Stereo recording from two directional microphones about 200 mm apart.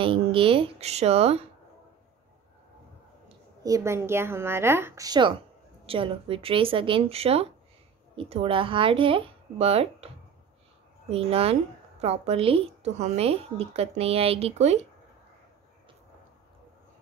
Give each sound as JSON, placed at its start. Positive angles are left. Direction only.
{"t": 0.0, "sound": "speech", "side_deg": -25}
{"t": 3.6, "sound": "a woman's voice", "side_deg": -15}